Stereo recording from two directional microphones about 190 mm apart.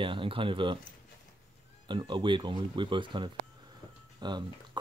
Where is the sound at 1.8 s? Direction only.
25° right (ahead or behind).